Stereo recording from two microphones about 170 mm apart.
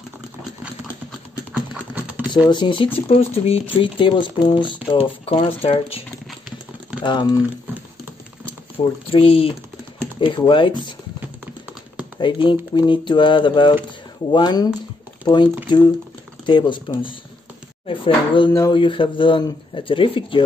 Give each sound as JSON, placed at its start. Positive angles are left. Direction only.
{"t": 1.5, "sound": "clip-clop", "side_deg": -10}
{"t": 2.3, "sound": "speech", "side_deg": 25}
{"t": 8.7, "sound": "speech", "side_deg": 35}
{"t": 12.2, "sound": "speech", "side_deg": 30}
{"t": 16.4, "sound": "speech", "side_deg": 30}
{"t": 18.5, "sound": "a sound", "side_deg": 15}
{"t": 18.8, "sound": "speech", "side_deg": 30}